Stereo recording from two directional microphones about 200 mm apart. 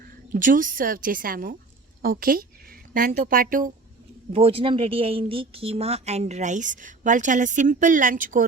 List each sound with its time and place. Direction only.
0.3 s a woman's voice: 40° right (ahead or behind)
4.3 s speech: 30° right (ahead or behind)